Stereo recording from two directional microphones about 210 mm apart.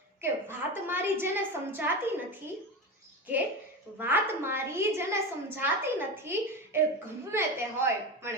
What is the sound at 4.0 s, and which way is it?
A woman's voice, 10° right (ahead or behind).